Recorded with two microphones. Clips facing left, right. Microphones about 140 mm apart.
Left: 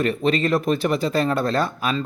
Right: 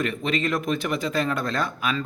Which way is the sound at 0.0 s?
35° left (ahead or behind).